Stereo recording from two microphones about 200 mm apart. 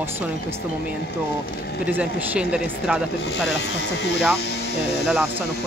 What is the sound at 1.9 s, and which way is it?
Speech, 5° right (ahead or behind).